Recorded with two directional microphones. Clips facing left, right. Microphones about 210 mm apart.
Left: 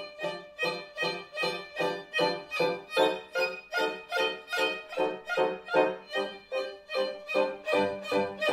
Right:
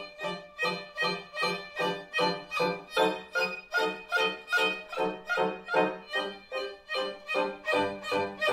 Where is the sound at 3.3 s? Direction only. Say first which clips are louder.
Left 2 dB; 15° left (ahead or behind).